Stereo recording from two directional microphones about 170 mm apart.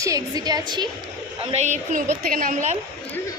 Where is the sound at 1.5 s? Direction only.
40° right (ahead or behind).